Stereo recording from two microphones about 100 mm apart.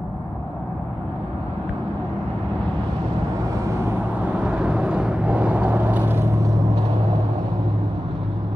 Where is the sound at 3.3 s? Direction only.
35° right (ahead or behind).